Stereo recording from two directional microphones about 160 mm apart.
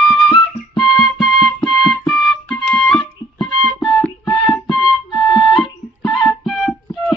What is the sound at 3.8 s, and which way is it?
Music, centre (ahead or behind).